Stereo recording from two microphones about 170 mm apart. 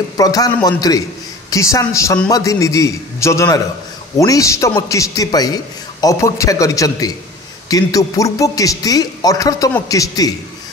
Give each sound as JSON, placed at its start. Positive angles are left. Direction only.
{"t": 0.2, "sound": "a man's voice", "side_deg": 20}